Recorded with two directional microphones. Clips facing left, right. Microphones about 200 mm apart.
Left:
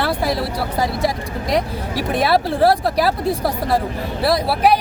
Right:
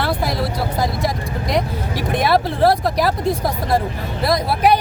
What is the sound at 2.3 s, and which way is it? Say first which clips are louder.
Speech: even; 5° left (ahead or behind).